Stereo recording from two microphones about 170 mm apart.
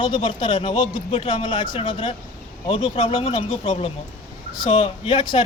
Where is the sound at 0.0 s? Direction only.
25° left (ahead or behind).